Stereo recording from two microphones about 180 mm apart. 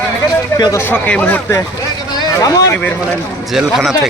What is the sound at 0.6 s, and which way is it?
Speech, 15° left (ahead or behind).